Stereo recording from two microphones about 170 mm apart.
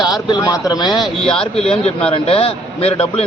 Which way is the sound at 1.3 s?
35° left (ahead or behind).